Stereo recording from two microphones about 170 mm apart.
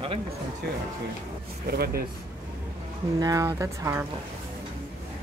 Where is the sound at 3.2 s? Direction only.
20° right (ahead or behind).